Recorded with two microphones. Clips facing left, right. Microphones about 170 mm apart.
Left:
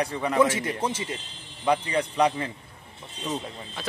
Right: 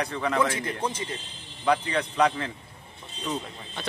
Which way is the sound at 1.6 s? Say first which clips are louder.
Left 1 dB; 10° left (ahead or behind).